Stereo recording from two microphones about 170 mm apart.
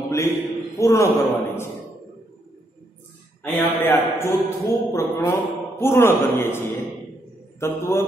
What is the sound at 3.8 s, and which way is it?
A man's voice, 15° left (ahead or behind).